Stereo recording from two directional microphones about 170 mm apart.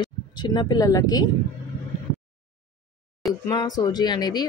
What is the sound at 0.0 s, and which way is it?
Speech, 25° left (ahead or behind).